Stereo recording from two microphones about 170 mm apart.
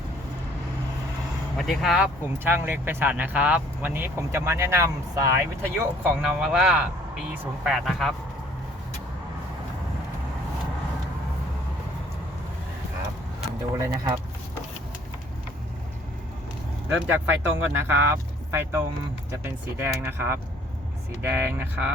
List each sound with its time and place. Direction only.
1.5 s speech: centre (ahead or behind)
2.4 s speech: 10° right (ahead or behind)
6.2 s speech: 5° right (ahead or behind)
13.7 s speech: 15° right (ahead or behind)
17.1 s speech: 15° right (ahead or behind)